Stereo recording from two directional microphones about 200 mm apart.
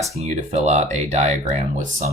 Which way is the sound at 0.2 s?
35° right (ahead or behind).